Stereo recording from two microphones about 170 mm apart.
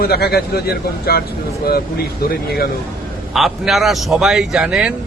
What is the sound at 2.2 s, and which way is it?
Speech, 65° left (ahead or behind).